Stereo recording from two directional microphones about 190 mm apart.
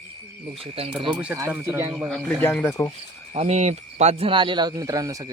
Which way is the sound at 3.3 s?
35° right (ahead or behind).